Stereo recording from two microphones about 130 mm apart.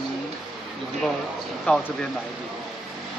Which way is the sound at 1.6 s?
5° left (ahead or behind).